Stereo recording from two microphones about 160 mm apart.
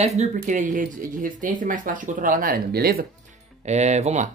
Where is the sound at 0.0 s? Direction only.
45° right (ahead or behind); by 3.1 s 75° right (ahead or behind).